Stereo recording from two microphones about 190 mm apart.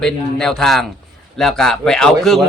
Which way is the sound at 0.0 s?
Centre (ahead or behind).